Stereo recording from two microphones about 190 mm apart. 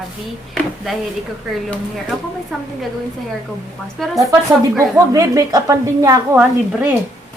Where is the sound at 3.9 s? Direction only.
Centre (ahead or behind).